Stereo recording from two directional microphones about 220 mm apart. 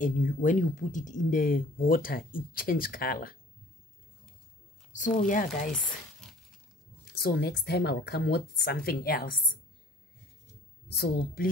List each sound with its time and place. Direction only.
0.0 s speech: 35° left (ahead or behind)
4.9 s speech: 35° left (ahead or behind)
7.1 s speech: 45° left (ahead or behind)
10.9 s speech: 45° left (ahead or behind)